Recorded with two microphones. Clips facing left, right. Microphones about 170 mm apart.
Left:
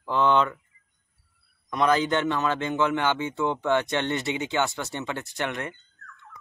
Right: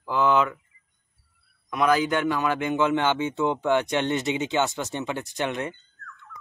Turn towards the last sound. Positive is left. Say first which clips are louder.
# right 2 dB
turn(degrees=-20)  # may be behind; listen again after turning